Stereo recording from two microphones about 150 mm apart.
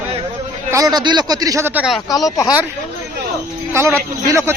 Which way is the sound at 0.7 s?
25° right (ahead or behind).